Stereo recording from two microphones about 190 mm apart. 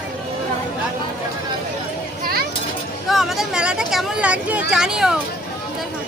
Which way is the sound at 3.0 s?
Centre (ahead or behind).